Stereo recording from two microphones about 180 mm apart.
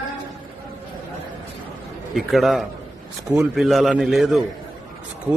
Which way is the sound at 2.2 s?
Centre (ahead or behind).